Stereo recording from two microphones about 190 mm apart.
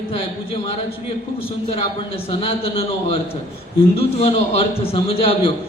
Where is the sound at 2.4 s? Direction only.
30° left (ahead or behind).